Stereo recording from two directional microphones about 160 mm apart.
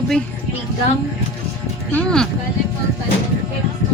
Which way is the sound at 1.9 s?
10° left (ahead or behind).